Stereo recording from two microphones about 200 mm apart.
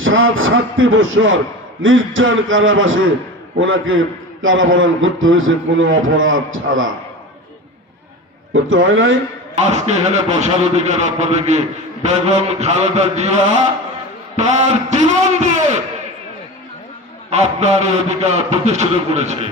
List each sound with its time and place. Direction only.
0.0 s a man's voice: 80° right
8.7 s a man's voice: 70° right (ahead or behind)
9.6 s a man's voice: 35° right (ahead or behind)
17.2 s a man's voice: 35° right (ahead or behind)